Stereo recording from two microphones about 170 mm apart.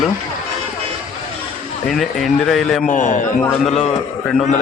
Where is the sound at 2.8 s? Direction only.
50° left (ahead or behind).